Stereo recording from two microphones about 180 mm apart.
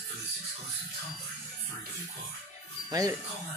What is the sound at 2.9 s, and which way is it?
Speech, 20° right (ahead or behind).